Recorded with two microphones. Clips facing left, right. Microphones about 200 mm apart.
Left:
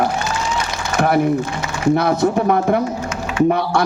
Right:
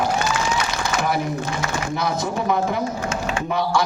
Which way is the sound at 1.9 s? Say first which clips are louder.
Left 8 dB; 60° left (ahead or behind).